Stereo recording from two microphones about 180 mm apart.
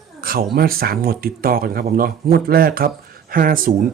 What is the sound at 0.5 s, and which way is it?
Speech, 55° right (ahead or behind).